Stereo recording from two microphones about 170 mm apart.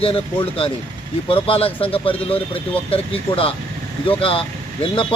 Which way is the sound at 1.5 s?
35° left (ahead or behind).